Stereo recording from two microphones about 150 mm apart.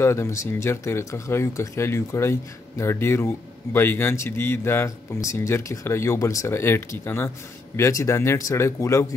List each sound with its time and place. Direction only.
0.0 s speech: 20° left (ahead or behind)